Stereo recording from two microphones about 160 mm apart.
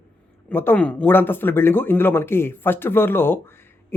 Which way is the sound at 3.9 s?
15° left (ahead or behind).